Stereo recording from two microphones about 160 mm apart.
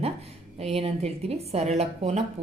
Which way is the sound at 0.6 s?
40° right (ahead or behind).